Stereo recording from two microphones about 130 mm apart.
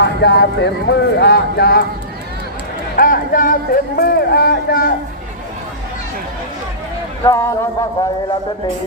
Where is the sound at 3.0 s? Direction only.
90° left.